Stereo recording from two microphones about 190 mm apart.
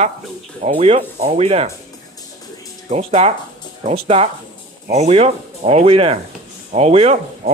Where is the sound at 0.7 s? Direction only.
30° right (ahead or behind).